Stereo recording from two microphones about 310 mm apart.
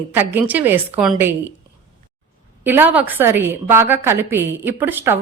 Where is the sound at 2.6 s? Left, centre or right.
Centre.